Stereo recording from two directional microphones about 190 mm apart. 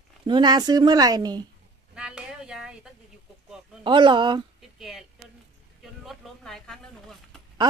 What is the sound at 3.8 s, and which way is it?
Speech, 25° right (ahead or behind).